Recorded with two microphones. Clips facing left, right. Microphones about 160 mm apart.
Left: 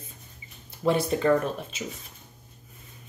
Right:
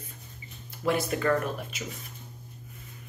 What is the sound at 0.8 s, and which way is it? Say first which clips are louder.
Speech: left 3 dB; 30° left (ahead or behind).